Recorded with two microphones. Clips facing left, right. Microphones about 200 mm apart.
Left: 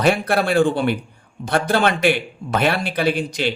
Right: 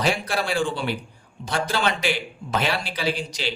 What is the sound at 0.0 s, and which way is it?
Speech, 55° left (ahead or behind).